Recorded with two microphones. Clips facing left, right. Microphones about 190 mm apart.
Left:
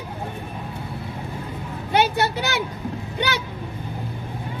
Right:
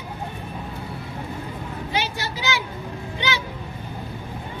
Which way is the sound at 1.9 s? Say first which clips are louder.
Left 9 dB; 60° left (ahead or behind).